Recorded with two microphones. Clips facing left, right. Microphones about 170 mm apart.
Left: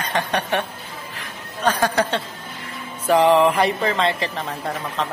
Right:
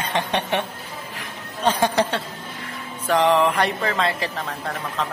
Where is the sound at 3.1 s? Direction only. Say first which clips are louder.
Left 3 dB; 5° left (ahead or behind).